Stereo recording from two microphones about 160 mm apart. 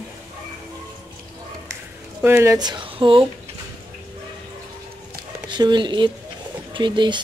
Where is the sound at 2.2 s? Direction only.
15° right (ahead or behind); by 3.2 s 30° right (ahead or behind).